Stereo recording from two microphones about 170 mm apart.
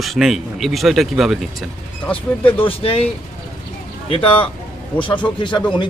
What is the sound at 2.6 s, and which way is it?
Speech, 35° left (ahead or behind).